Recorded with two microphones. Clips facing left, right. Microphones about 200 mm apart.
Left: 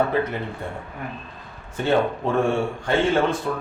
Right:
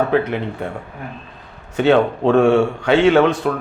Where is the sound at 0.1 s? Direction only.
70° right (ahead or behind).